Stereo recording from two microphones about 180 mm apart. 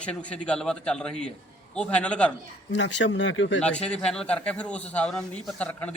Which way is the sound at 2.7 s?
90° left.